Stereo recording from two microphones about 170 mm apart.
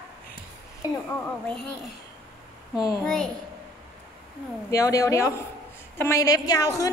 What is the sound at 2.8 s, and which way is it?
Speech, 20° left (ahead or behind).